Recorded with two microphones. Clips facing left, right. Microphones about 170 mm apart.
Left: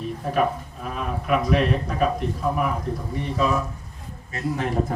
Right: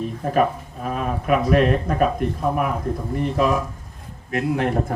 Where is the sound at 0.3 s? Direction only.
50° right (ahead or behind).